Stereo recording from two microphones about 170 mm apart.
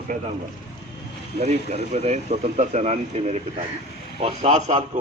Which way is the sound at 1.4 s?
40° right (ahead or behind).